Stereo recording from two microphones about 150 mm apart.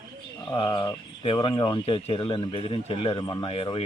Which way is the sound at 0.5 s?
30° left (ahead or behind).